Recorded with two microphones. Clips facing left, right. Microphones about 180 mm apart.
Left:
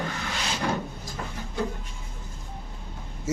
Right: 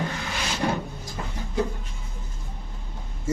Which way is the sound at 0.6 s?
25° right (ahead or behind).